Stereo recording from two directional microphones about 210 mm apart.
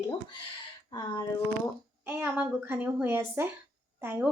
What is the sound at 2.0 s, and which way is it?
A woman's voice, 10° right (ahead or behind).